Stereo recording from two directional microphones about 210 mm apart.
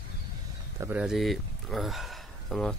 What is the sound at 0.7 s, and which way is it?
Speech, 5° right (ahead or behind).